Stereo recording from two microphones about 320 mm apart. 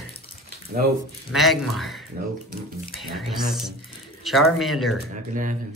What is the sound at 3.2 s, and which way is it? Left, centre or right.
Speech, centre.